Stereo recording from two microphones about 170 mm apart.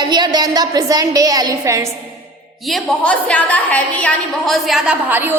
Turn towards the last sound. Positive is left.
turn(degrees=-10)  # may be behind; listen again after turning